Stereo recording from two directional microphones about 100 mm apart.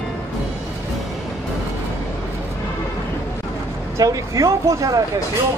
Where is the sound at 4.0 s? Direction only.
35° right (ahead or behind).